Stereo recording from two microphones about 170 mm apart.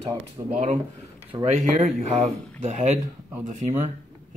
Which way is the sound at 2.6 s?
45° right (ahead or behind).